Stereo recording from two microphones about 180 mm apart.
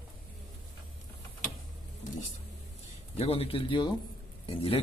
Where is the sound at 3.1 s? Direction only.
35° left (ahead or behind).